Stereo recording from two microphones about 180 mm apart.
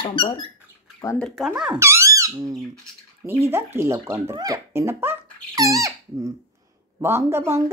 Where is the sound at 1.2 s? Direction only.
Centre (ahead or behind).